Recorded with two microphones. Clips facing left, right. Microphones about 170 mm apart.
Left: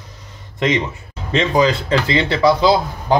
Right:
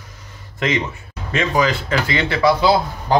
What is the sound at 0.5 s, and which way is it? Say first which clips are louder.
Speech: left 3 dB; 25° left (ahead or behind).